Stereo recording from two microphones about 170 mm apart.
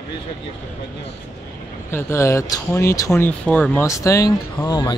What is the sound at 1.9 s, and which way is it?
Speech, 15° left (ahead or behind).